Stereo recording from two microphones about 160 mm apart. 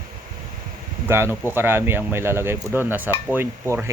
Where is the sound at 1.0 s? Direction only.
15° right (ahead or behind).